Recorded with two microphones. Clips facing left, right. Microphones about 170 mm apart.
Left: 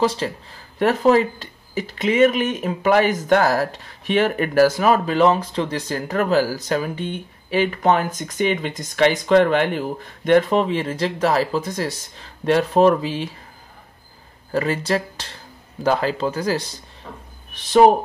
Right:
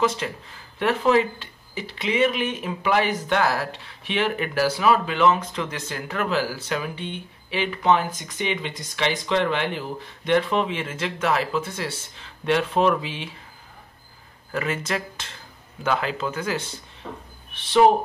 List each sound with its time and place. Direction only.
0.0 s speech: 35° left (ahead or behind)
14.5 s speech: 35° left (ahead or behind)